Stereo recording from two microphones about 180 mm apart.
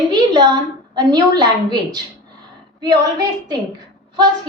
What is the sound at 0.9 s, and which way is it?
A woman's voice, 25° right (ahead or behind).